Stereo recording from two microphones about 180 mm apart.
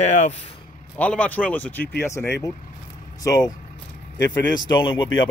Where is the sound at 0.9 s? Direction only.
5° left (ahead or behind).